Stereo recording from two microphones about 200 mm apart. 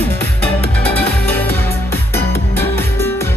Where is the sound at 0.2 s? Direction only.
10° left (ahead or behind).